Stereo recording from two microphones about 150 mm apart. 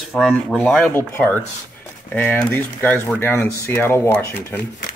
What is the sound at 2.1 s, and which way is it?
Speech, 15° left (ahead or behind).